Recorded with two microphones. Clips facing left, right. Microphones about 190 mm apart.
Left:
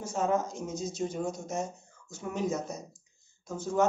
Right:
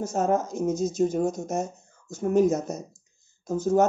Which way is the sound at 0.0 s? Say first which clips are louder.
Right 5 dB; 40° right (ahead or behind).